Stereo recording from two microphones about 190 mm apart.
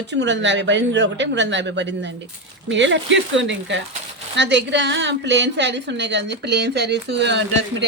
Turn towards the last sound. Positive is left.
turn(degrees=-65)  # may be behind; listen again after turning